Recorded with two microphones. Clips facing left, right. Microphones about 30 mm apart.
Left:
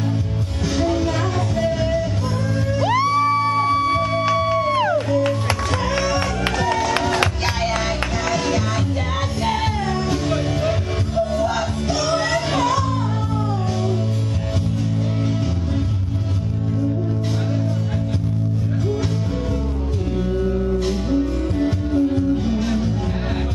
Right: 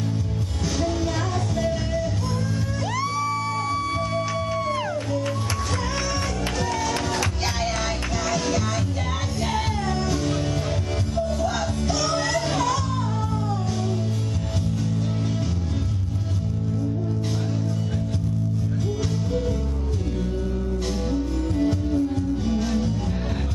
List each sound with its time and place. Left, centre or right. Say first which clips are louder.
0.7 s music: left 5 dB; left
6.6 s music: left 6 dB; left
8.3 s music: left 3 dB; left
21.1 s music: left 4 dB; left